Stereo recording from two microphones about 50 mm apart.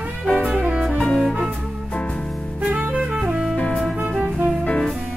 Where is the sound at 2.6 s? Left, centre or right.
Right.